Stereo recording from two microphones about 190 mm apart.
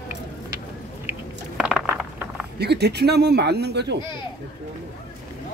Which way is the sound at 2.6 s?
60° right (ahead or behind).